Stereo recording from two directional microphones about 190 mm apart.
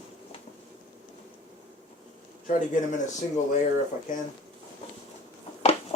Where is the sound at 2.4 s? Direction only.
40° left (ahead or behind).